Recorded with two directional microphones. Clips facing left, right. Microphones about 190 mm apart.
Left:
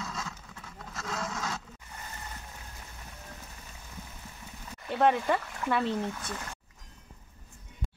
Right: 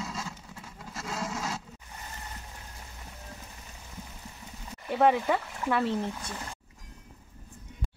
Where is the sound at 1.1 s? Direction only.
30° right (ahead or behind).